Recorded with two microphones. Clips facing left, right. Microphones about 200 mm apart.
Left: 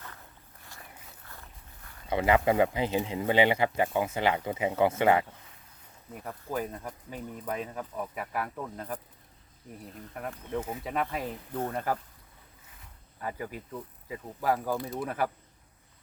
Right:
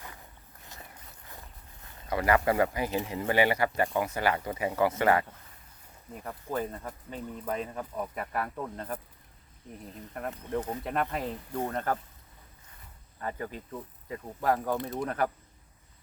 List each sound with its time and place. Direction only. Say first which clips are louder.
1.2 s boat: right 3 dB; 15° right (ahead or behind)
2.0 s speech: left 1 dB; 20° left (ahead or behind)
6.1 s speech: right 1 dB; 5° left (ahead or behind)
10.2 s speech: right 1 dB; centre (ahead or behind)
13.2 s speech: even; 10° left (ahead or behind)